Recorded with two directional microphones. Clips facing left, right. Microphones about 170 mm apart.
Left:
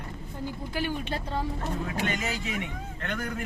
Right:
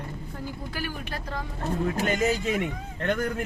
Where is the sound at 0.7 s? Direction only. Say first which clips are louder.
Left 7 dB; 25° left (ahead or behind).